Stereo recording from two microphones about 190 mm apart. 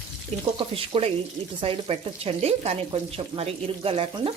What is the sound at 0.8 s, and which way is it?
Speech, 30° right (ahead or behind).